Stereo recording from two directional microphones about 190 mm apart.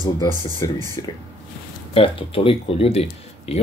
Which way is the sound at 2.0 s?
30° left (ahead or behind).